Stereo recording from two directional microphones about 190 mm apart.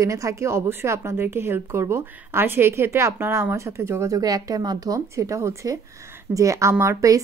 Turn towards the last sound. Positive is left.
turn(degrees=-15)  # may be behind; listen again after turning